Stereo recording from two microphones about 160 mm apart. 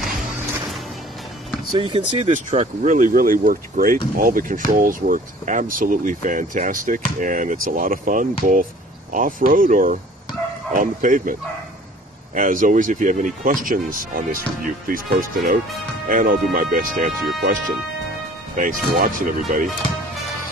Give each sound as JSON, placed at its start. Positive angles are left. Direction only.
{"t": 1.7, "sound": "speech", "side_deg": -30}
{"t": 2.3, "sound": "speech", "side_deg": -50}
{"t": 12.4, "sound": "speech", "side_deg": -55}